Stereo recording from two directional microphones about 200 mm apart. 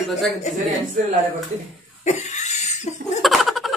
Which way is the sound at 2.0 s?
35° left (ahead or behind).